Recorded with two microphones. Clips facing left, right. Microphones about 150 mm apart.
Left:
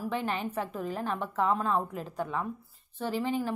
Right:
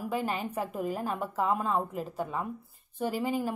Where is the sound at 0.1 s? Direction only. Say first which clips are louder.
Right 2 dB; 5° right (ahead or behind).